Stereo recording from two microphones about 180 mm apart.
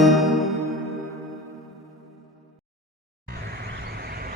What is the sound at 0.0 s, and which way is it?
Music, centre (ahead or behind).